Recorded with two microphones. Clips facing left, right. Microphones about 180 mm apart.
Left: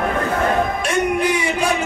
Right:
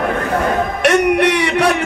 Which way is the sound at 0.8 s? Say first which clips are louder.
Right 6 dB; 75° right (ahead or behind).